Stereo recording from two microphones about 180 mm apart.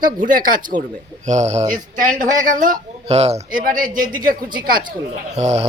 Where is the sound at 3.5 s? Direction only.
50° right (ahead or behind).